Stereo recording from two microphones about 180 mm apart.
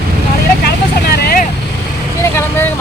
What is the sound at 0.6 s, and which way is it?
Vehicle, 60° left (ahead or behind).